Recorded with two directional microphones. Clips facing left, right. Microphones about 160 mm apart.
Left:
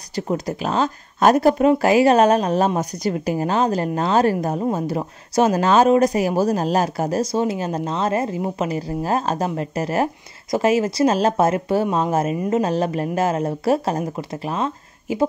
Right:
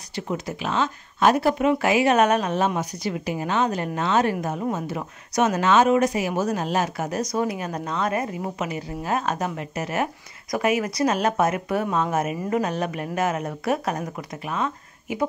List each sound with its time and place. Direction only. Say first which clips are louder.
0.1 s speech: left 5 dB; 40° left (ahead or behind)